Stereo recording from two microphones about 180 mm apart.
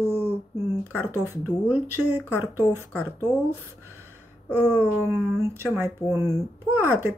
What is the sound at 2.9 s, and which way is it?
Speech, 10° left (ahead or behind).